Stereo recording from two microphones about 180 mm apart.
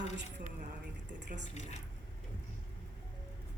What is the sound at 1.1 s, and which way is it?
Speech, 75° right (ahead or behind).